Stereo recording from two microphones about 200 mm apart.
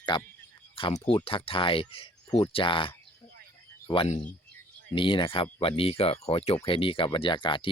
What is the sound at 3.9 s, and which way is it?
Speech, 25° left (ahead or behind).